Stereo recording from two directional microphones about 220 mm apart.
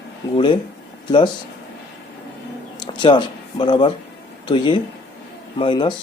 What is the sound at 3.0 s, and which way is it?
Speech, 20° left (ahead or behind).